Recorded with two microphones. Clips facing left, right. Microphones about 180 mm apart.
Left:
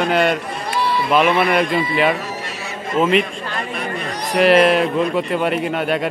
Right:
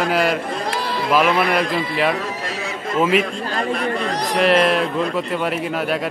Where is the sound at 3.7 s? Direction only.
55° right (ahead or behind).